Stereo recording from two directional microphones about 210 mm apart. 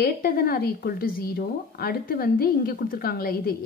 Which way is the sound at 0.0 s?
45° left (ahead or behind).